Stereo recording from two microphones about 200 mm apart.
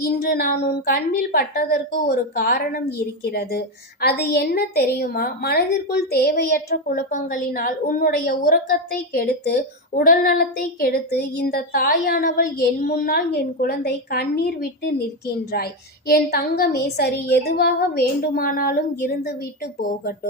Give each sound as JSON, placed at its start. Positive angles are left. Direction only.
{"t": 0.0, "sound": "a woman's voice", "side_deg": 50}